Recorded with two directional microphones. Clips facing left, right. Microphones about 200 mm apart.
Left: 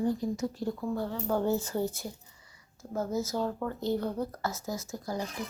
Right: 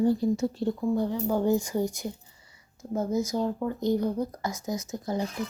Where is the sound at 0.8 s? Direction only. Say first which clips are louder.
Right 9 dB; 15° right (ahead or behind).